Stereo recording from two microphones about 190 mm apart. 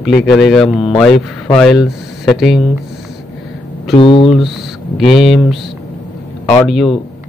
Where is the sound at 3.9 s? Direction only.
25° left (ahead or behind).